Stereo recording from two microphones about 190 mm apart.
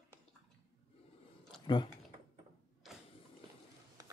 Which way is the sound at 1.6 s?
25° left (ahead or behind).